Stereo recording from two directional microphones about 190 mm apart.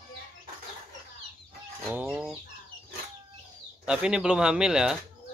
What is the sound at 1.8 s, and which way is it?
Chicken, 5° right (ahead or behind).